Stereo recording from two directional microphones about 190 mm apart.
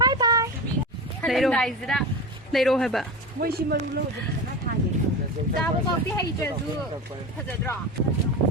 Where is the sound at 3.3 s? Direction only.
55° right (ahead or behind).